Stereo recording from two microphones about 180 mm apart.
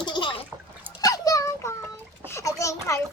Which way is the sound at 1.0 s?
20° left (ahead or behind).